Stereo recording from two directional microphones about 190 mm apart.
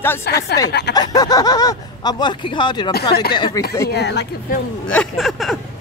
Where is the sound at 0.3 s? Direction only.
60° left (ahead or behind).